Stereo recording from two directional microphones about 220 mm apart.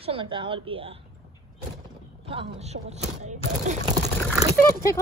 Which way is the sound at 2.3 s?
25° right (ahead or behind).